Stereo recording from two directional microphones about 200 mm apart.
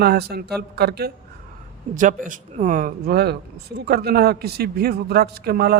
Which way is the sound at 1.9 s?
40° right (ahead or behind).